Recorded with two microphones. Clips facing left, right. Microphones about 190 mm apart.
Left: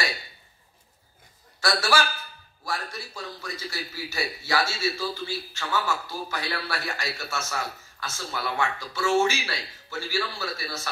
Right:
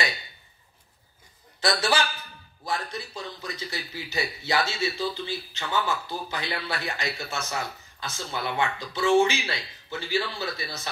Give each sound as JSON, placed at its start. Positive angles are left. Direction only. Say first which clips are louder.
{"t": 1.6, "sound": "a man's voice", "louder": "even", "side_deg": -20}